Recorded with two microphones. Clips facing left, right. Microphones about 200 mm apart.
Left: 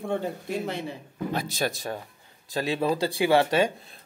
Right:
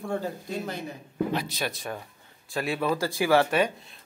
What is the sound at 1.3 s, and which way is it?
Speech, 45° left (ahead or behind).